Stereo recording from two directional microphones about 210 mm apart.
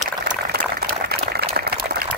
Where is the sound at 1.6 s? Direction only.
50° right (ahead or behind).